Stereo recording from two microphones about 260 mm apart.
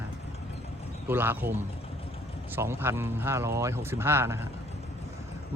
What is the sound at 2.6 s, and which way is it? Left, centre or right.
Speech, centre.